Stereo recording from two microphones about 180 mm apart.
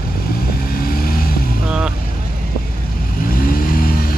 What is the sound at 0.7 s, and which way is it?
Vehicle, 55° left (ahead or behind).